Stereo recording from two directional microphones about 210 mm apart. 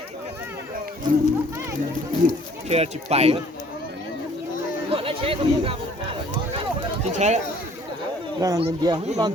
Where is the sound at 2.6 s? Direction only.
30° right (ahead or behind).